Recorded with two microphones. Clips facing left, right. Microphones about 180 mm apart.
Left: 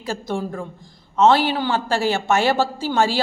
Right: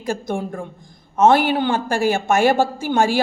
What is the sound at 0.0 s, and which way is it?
Speech, 50° right (ahead or behind).